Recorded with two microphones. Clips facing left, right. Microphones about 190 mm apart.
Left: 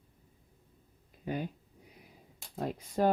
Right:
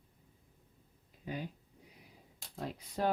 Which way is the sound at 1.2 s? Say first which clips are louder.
Left 5 dB; 55° left (ahead or behind).